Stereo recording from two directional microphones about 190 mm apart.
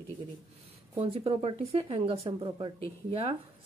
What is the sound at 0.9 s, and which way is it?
Speech, 30° right (ahead or behind).